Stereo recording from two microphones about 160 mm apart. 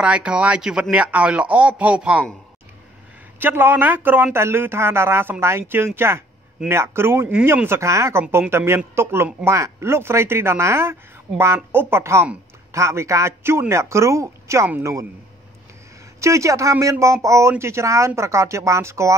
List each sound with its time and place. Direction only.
0.0 s speech: 5° right (ahead or behind)
3.3 s speech: 10° right (ahead or behind)
16.2 s speech: 20° right (ahead or behind)